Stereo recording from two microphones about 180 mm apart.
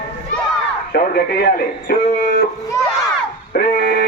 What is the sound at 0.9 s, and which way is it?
Speech, 65° left (ahead or behind).